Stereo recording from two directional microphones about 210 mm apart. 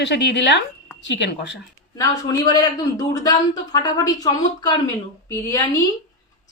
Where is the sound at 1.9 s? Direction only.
20° left (ahead or behind).